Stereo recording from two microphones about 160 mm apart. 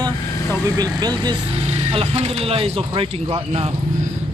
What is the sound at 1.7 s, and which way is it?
A man's voice, 35° right (ahead or behind).